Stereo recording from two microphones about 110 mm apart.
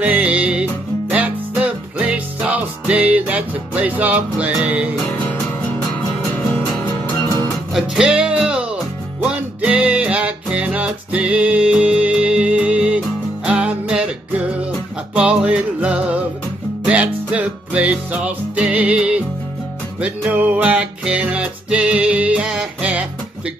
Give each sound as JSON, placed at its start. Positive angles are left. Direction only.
{"t": 0.0, "sound": "music", "side_deg": -15}
{"t": 7.1, "sound": "music", "side_deg": 20}
{"t": 7.7, "sound": "music", "side_deg": -5}